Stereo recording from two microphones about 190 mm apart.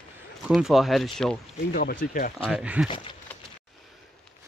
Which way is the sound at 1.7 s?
45° left (ahead or behind).